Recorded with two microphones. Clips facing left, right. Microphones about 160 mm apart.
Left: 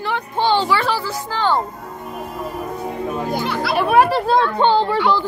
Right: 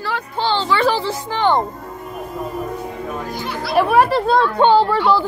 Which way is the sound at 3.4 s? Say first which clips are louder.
Left 4 dB; 80° left.